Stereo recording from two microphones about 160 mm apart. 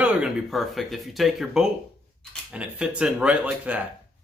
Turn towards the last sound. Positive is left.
turn(degrees=-10)  # may be behind; listen again after turning